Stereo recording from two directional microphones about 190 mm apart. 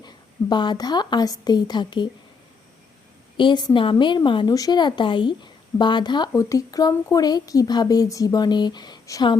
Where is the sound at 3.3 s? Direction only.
25° left (ahead or behind).